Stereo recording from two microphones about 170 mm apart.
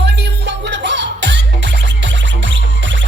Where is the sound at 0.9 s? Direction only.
90° right.